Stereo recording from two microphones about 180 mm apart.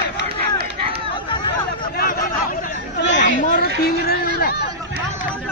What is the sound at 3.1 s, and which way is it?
Chatter, 45° left (ahead or behind).